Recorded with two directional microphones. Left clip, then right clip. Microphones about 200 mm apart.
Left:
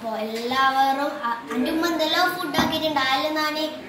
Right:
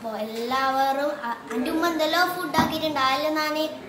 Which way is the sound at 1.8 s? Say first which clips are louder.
Even; 15° right (ahead or behind).